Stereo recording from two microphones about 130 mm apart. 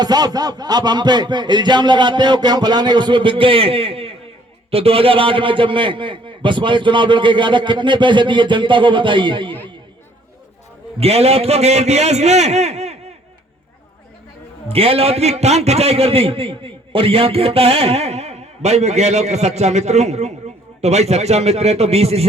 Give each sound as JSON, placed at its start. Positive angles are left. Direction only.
{"t": 0.0, "sound": "a man's voice", "side_deg": -30}
{"t": 11.0, "sound": "a man's voice", "side_deg": -50}
{"t": 14.7, "sound": "a man's voice", "side_deg": -50}